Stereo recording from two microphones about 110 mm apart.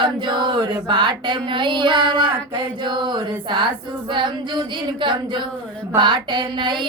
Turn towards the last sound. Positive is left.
turn(degrees=-45)  # may be behind; listen again after turning